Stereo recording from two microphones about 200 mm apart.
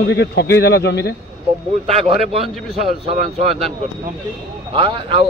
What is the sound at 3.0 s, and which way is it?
Speech, 30° right (ahead or behind).